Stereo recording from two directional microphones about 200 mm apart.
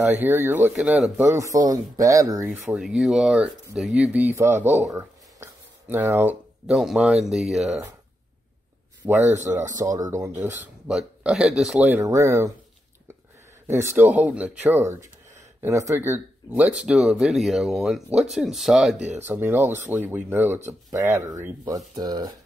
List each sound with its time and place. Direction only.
0.2 s speech: 10° right (ahead or behind)
1.4 s speech: 15° right (ahead or behind)
9.0 s speech: 10° right (ahead or behind)
13.7 s speech: 10° right (ahead or behind)